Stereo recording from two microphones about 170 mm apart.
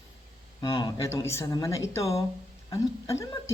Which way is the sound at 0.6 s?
30° left (ahead or behind).